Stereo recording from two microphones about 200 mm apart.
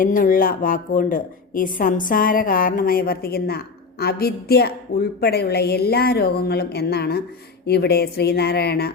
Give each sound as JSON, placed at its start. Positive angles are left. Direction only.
{"t": 0.0, "sound": "a woman's voice", "side_deg": 45}